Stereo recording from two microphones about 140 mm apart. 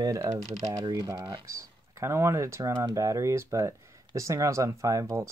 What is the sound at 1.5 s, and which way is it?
A man's voice, 20° right (ahead or behind).